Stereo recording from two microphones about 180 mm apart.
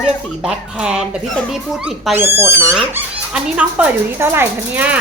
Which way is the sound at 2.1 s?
15° right (ahead or behind).